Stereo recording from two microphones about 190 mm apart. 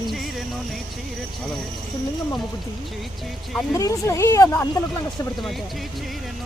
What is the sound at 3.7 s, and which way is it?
Speech, 15° left (ahead or behind).